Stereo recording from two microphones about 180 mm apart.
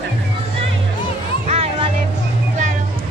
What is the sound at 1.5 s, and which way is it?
Music, 30° right (ahead or behind).